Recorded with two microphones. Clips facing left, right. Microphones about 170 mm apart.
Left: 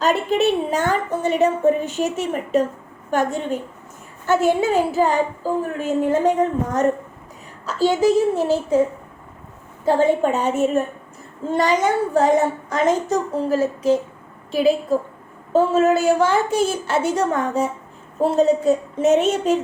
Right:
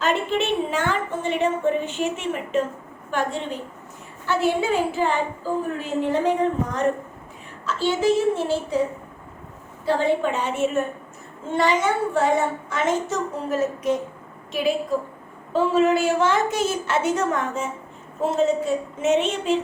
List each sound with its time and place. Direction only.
0.0 s a woman's voice: 40° left (ahead or behind)
7.6 s a woman's voice: 40° left (ahead or behind)
9.8 s a woman's voice: 45° left (ahead or behind)
15.5 s a woman's voice: 40° left (ahead or behind)